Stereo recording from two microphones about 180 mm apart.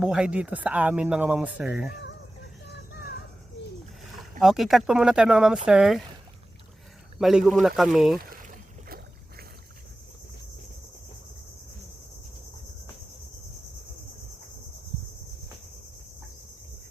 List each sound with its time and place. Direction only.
0.0 s speech: 5° right (ahead or behind)
4.2 s speech: centre (ahead or behind)
7.2 s speech: centre (ahead or behind)
8.2 s boat: 50° right (ahead or behind)